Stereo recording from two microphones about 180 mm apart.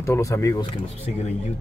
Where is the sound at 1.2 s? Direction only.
35° left (ahead or behind).